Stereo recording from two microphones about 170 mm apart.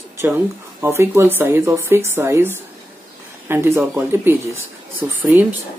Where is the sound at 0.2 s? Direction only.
15° right (ahead or behind).